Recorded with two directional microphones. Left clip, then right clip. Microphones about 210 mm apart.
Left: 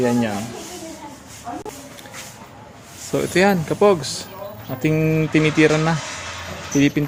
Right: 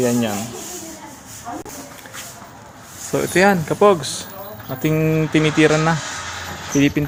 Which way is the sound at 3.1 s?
Centre (ahead or behind).